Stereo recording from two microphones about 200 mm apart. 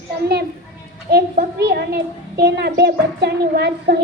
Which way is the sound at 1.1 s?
55° right (ahead or behind).